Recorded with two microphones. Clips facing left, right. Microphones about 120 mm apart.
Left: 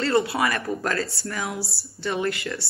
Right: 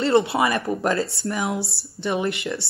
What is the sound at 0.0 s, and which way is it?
A woman's voice, 25° right (ahead or behind).